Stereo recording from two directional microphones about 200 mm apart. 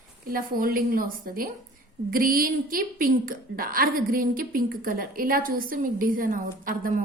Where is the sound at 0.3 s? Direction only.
45° right (ahead or behind).